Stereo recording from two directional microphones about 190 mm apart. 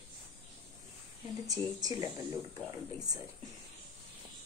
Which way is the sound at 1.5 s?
20° right (ahead or behind).